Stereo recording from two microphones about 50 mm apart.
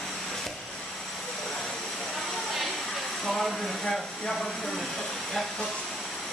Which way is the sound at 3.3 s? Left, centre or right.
Centre.